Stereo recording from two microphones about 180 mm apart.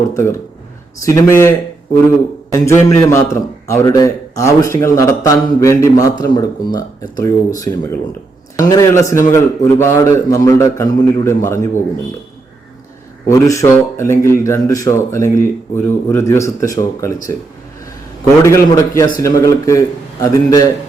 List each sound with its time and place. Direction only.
0.1 s a man's voice: 15° left (ahead or behind)
13.2 s a man's voice: 15° left (ahead or behind)
18.4 s a man's voice: 15° left (ahead or behind)